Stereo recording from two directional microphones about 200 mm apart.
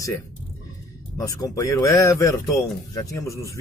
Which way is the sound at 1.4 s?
15° left (ahead or behind).